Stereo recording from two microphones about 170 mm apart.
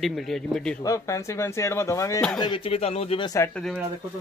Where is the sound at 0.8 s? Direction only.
20° left (ahead or behind); by 3.3 s 35° left (ahead or behind).